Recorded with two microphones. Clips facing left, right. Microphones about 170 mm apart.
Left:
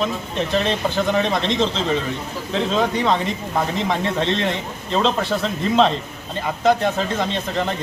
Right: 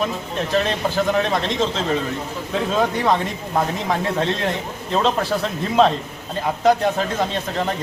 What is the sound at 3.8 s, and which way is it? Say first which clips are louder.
Speech: even; 5° right (ahead or behind).